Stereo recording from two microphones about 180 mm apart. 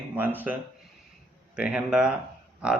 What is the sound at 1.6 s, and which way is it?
A man's voice, 5° right (ahead or behind).